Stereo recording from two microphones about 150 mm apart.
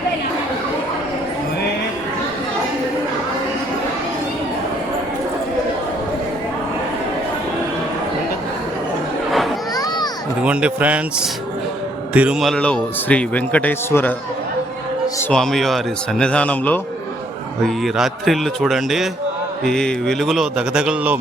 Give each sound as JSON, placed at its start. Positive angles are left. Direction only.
{"t": 9.7, "sound": "children playing", "side_deg": 25}
{"t": 10.4, "sound": "speech", "side_deg": -10}
{"t": 15.3, "sound": "a man's voice", "side_deg": 5}
{"t": 17.7, "sound": "a man's voice", "side_deg": 0}